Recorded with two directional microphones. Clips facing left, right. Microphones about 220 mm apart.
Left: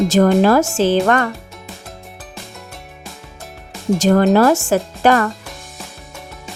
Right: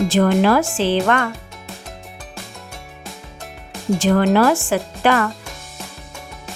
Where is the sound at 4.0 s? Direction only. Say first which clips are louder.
Left 3 dB; 40° left (ahead or behind).